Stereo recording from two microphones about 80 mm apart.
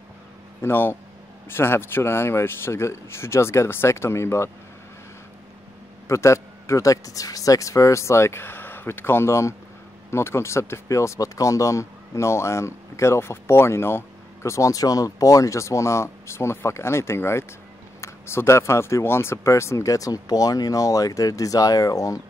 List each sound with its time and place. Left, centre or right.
0.6 s speech: left
6.0 s speech: left